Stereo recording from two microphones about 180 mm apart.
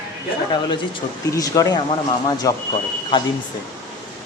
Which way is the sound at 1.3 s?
20° left (ahead or behind).